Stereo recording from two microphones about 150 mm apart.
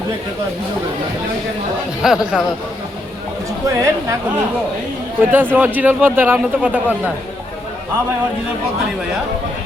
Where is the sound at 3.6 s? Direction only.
20° right (ahead or behind).